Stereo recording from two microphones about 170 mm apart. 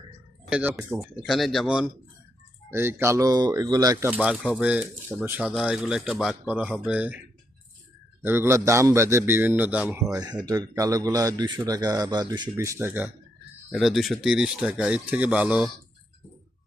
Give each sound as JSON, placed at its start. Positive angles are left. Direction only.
{"t": 0.5, "sound": "a man's voice", "side_deg": -10}
{"t": 4.1, "sound": "a man's voice", "side_deg": -10}
{"t": 5.5, "sound": "a man's voice", "side_deg": -5}
{"t": 8.2, "sound": "a man's voice", "side_deg": -15}
{"t": 10.1, "sound": "speech", "side_deg": -25}
{"t": 13.7, "sound": "speech", "side_deg": 0}